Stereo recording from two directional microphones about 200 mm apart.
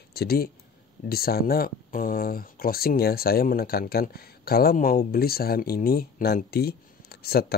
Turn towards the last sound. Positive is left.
turn(degrees=50)  # may be behind; listen again after turning